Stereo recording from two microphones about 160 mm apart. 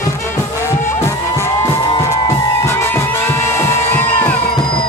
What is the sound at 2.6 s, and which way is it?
Music, 15° left (ahead or behind).